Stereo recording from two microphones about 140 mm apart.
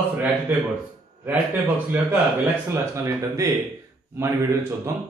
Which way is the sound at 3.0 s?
20° right (ahead or behind).